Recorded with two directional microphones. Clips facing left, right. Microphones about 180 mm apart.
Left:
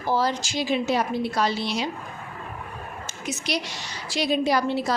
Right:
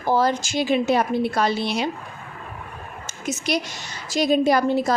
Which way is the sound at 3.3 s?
50° right (ahead or behind).